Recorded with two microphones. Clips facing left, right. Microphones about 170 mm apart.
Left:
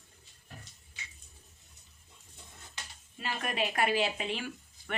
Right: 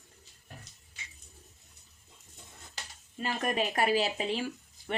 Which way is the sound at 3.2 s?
40° right (ahead or behind).